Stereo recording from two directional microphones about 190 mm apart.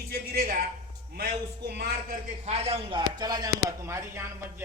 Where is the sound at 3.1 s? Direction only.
20° right (ahead or behind).